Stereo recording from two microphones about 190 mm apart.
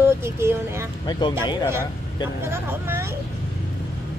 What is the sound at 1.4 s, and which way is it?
Speech, 25° left (ahead or behind).